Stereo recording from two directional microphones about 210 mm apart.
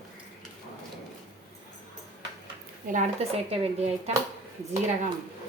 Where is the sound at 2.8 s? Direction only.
35° right (ahead or behind).